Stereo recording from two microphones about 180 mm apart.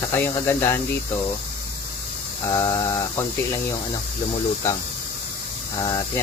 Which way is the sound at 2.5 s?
20° left (ahead or behind).